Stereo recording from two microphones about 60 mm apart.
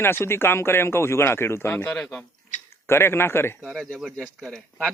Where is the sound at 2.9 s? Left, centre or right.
Left.